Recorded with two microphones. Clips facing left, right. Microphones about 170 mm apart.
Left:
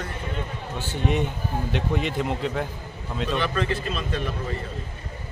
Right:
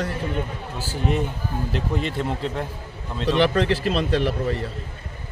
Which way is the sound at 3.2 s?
70° right (ahead or behind).